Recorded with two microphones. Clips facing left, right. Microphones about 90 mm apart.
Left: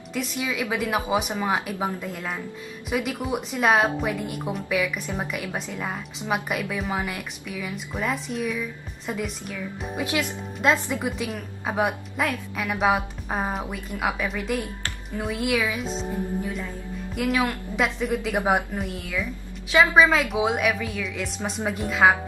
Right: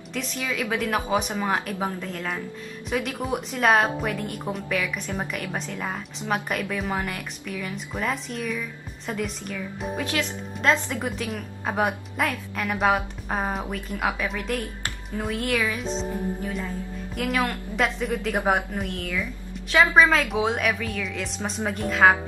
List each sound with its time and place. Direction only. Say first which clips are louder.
0.1 s a woman's voice: left 2 dB; 5° left (ahead or behind)
17.1 s a woman's voice: left 2 dB; 5° left (ahead or behind)